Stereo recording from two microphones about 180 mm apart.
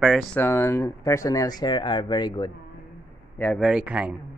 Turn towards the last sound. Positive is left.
turn(degrees=-5)  # may be behind; listen again after turning